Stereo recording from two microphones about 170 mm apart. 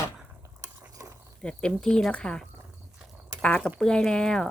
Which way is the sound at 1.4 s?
5° left (ahead or behind).